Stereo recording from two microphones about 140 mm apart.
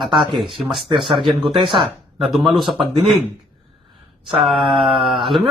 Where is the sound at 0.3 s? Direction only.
Centre (ahead or behind).